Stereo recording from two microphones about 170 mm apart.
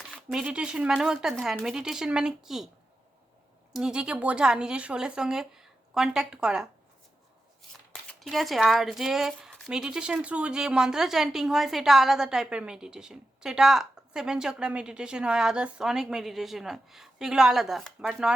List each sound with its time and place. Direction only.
0.1 s speech: centre (ahead or behind)
3.7 s speech: 5° right (ahead or behind)
8.2 s speech: centre (ahead or behind)